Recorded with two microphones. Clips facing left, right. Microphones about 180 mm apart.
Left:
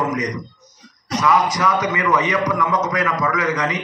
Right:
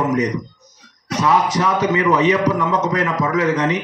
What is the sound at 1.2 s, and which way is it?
A man's voice, 30° right (ahead or behind).